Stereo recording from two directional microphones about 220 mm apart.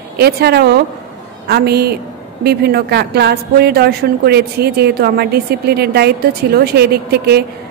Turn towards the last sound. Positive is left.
turn(degrees=-45)  # may be behind; listen again after turning